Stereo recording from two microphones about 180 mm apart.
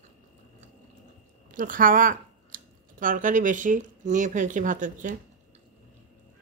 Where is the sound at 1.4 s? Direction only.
50° right (ahead or behind).